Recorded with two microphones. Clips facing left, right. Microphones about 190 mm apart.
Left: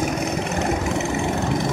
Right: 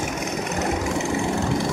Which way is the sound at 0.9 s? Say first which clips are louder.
Left 1 dB; 20° left (ahead or behind).